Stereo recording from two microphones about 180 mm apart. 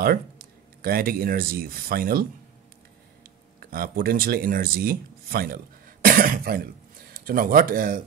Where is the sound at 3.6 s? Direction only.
55° right (ahead or behind).